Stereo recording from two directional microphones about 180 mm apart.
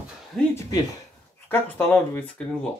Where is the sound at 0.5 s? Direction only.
20° left (ahead or behind).